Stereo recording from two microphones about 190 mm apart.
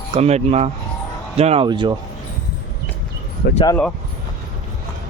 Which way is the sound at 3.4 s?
55° left (ahead or behind).